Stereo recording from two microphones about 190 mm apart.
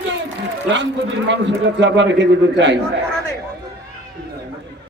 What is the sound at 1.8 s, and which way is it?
Speech, 70° right (ahead or behind).